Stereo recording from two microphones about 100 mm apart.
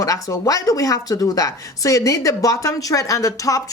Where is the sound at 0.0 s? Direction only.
35° left (ahead or behind).